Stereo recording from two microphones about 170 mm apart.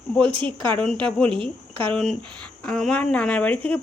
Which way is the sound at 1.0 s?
5° left (ahead or behind).